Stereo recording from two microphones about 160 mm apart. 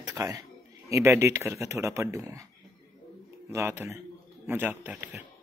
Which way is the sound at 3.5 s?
15° right (ahead or behind).